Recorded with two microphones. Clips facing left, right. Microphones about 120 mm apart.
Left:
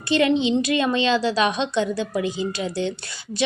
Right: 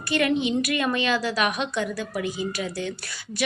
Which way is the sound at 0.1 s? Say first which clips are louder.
Left 4 dB; 25° left (ahead or behind).